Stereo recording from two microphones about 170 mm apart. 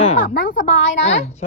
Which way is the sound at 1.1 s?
40° left (ahead or behind).